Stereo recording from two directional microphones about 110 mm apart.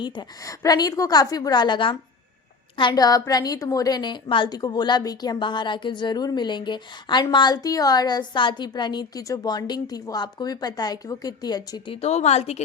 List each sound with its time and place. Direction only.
0.0 s a woman's voice: 35° left (ahead or behind)
11.9 s a woman's voice: 70° left (ahead or behind)